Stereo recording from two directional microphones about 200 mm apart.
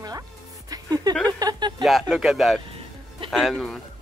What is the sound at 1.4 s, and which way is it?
Speech, 20° right (ahead or behind).